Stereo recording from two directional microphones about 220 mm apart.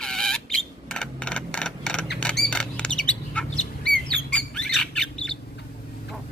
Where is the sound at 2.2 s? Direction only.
5° left (ahead or behind).